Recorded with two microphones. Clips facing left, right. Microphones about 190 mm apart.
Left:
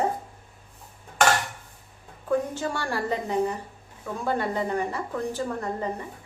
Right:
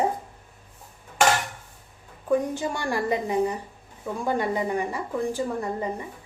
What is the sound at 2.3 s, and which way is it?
A woman's voice, 15° right (ahead or behind).